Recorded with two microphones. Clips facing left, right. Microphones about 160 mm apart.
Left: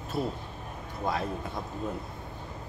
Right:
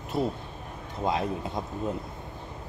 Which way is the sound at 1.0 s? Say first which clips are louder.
Right 3 dB; 20° right (ahead or behind).